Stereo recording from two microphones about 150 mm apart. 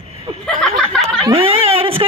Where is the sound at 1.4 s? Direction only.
40° right (ahead or behind).